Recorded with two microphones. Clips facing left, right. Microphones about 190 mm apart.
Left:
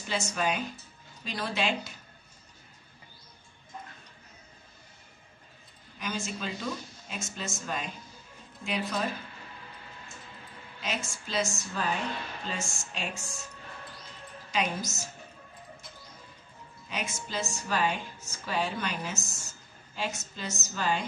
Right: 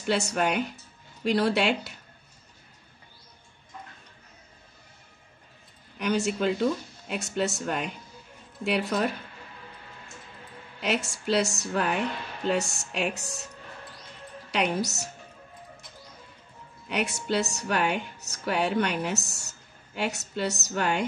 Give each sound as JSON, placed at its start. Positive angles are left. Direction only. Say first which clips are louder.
{"t": 0.0, "sound": "speech", "louder": "right 5 dB", "side_deg": -65}
{"t": 5.9, "sound": "speech", "louder": "right 9 dB", "side_deg": -65}
{"t": 10.8, "sound": "speech", "louder": "right 7 dB", "side_deg": -70}
{"t": 14.5, "sound": "speech", "louder": "right 4 dB", "side_deg": -65}
{"t": 16.9, "sound": "speech", "louder": "right 8 dB", "side_deg": -70}